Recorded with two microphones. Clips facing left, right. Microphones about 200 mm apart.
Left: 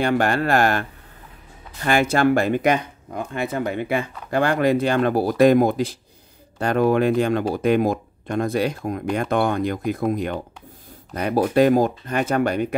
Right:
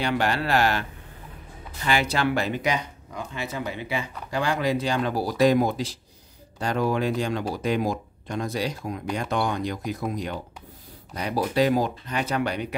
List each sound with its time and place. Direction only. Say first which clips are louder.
0.0 s speech: left 5 dB; 50° left (ahead or behind)